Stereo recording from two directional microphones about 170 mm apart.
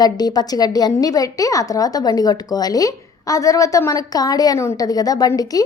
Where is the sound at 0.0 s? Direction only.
25° left (ahead or behind).